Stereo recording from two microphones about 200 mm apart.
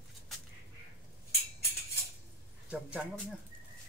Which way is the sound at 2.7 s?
5° right (ahead or behind).